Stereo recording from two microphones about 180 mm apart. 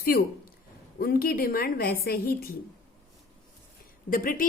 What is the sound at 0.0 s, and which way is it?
A woman's voice, 55° left (ahead or behind).